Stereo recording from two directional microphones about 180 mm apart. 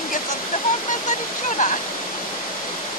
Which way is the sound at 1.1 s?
45° left (ahead or behind).